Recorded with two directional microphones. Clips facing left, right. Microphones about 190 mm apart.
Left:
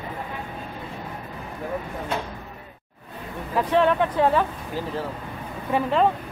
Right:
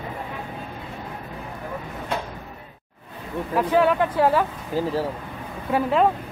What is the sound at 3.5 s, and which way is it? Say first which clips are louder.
Speech: right 1 dB; 5° right (ahead or behind).